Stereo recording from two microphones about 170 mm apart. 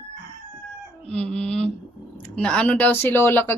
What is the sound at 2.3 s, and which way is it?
A woman's voice, 5° left (ahead or behind).